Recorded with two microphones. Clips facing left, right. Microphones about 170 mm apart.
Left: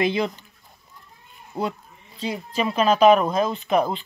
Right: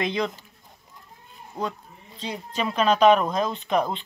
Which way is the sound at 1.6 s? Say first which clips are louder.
Left 3 dB; 10° left (ahead or behind).